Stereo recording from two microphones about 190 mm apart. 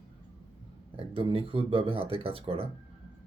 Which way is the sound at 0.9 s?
30° right (ahead or behind).